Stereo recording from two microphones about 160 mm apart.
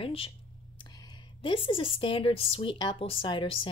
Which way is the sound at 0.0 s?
35° left (ahead or behind).